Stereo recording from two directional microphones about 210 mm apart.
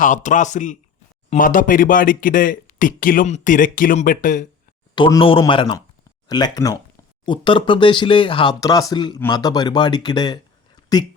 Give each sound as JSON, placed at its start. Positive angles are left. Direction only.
{"t": 0.0, "sound": "speech", "side_deg": 35}
{"t": 4.9, "sound": "speech", "side_deg": 20}